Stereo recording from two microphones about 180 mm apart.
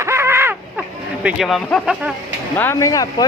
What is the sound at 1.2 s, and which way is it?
Speech, centre (ahead or behind).